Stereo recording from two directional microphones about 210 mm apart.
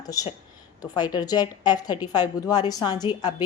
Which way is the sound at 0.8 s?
20° left (ahead or behind).